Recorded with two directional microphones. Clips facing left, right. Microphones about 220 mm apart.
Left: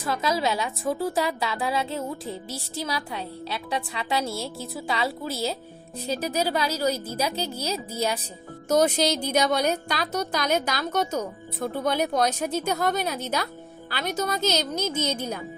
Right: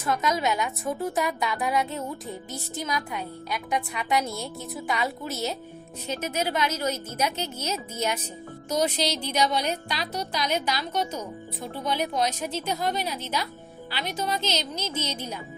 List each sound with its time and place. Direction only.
0.0 s a woman's voice: 30° left (ahead or behind)
8.7 s a woman's voice: 50° left (ahead or behind)